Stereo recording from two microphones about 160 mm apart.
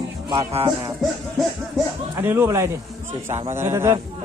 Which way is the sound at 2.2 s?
15° right (ahead or behind).